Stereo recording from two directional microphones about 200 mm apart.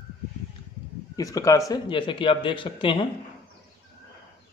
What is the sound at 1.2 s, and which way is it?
Speech, 15° left (ahead or behind).